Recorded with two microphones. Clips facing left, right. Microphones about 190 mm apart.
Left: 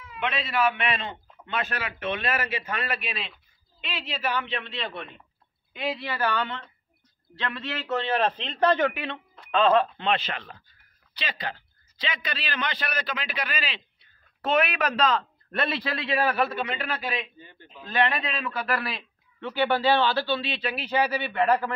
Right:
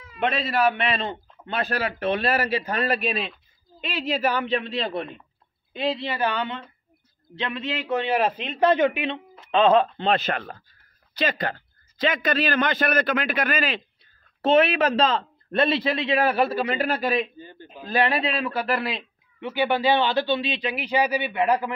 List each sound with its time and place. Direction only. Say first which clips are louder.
0.0 s a man's voice: right 5 dB; 40° right (ahead or behind); by 9.8 s 20° right (ahead or behind)
9.9 s a man's voice: right 4 dB; 40° right (ahead or behind)
14.4 s speech: right 6 dB; 30° right (ahead or behind); by 17.3 s 45° right (ahead or behind)
17.4 s a man's voice: right 6 dB; 35° right (ahead or behind); by 21.7 s 15° right (ahead or behind)